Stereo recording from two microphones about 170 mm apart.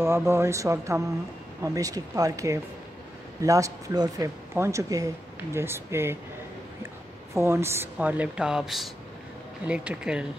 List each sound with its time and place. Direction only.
0.0 s speech: 15° right (ahead or behind)
7.3 s speech: 15° right (ahead or behind)